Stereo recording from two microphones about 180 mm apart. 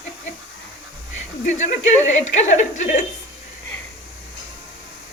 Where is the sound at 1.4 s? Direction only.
40° left (ahead or behind).